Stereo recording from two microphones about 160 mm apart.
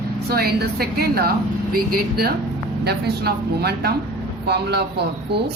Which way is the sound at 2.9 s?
85° right.